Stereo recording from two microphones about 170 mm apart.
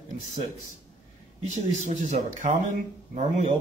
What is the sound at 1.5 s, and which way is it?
Speech, 45° right (ahead or behind).